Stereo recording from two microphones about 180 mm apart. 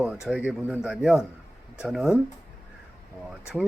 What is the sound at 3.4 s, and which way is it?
Speech, 5° right (ahead or behind).